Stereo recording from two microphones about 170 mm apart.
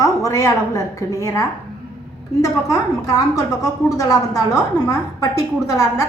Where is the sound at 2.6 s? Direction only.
20° left (ahead or behind).